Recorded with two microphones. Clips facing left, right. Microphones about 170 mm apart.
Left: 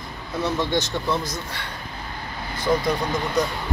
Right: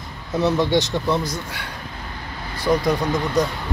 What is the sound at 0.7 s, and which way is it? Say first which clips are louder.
Speech: right 4 dB; 15° right (ahead or behind).